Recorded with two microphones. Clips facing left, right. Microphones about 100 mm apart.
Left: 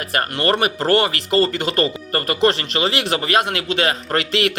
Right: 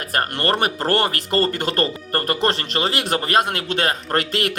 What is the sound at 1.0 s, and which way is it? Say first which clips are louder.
A man's voice: left 2 dB; 45° right (ahead or behind).